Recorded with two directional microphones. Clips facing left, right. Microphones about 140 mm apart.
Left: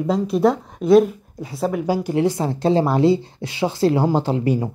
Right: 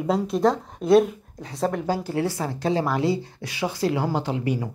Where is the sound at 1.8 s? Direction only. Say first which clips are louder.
Left 5 dB; 15° left (ahead or behind).